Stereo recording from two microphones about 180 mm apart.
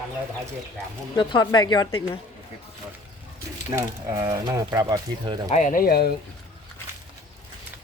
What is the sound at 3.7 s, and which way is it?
Speech, 15° right (ahead or behind).